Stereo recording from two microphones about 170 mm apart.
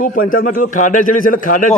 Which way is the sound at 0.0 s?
55° left (ahead or behind).